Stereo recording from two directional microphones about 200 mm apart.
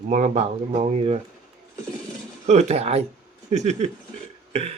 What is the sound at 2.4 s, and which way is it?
Speech, 35° right (ahead or behind).